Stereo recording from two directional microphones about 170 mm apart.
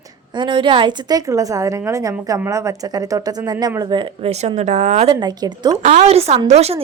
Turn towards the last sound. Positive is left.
turn(degrees=-40)  # may be behind; listen again after turning